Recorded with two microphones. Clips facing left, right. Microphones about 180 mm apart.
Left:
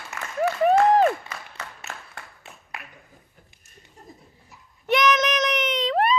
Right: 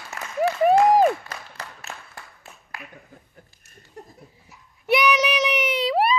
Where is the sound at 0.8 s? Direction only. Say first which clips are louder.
Right 1 dB; 15° right (ahead or behind).